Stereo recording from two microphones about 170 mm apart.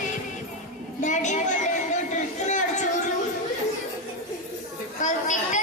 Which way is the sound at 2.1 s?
45° left (ahead or behind).